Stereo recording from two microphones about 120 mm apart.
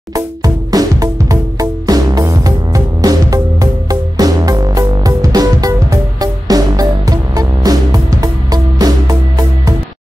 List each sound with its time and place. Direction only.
0.1 s music: 30° right (ahead or behind)